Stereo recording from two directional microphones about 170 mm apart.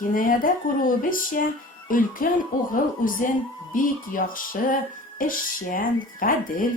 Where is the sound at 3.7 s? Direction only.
55° left (ahead or behind).